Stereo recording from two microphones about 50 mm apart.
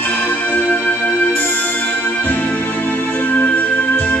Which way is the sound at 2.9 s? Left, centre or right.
Left.